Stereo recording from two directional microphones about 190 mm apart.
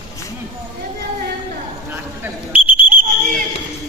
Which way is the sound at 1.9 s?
10° right (ahead or behind).